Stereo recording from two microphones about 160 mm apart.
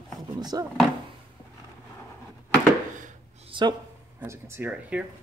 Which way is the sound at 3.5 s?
30° right (ahead or behind).